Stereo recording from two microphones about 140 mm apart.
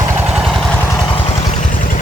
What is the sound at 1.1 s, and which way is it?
Vehicle, 40° left (ahead or behind).